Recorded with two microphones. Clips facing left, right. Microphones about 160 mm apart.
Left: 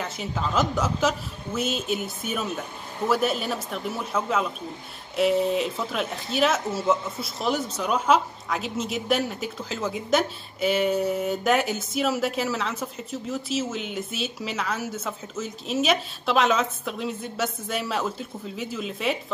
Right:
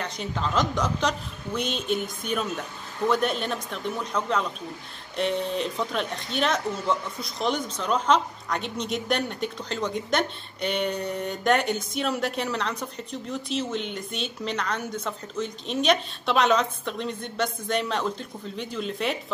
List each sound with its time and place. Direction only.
0.0 s speech: 5° left (ahead or behind)